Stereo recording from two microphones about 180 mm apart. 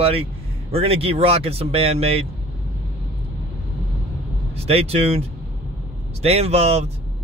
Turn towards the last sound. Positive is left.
turn(degrees=-35)  # may be behind; listen again after turning